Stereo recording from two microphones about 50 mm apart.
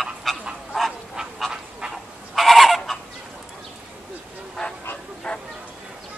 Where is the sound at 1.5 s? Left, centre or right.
Centre.